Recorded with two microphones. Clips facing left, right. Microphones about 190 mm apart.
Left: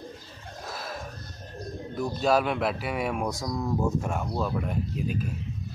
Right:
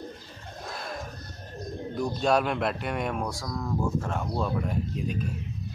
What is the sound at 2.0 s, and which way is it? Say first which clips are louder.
Speech: left 1 dB; 5° left (ahead or behind).